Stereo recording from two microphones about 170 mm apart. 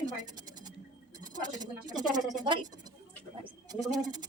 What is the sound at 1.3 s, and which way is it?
Speech, 25° right (ahead or behind).